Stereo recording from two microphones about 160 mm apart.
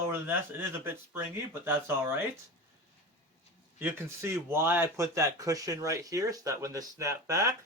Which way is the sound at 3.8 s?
15° right (ahead or behind).